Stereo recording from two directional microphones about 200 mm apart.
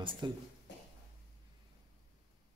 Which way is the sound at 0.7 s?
60° left (ahead or behind).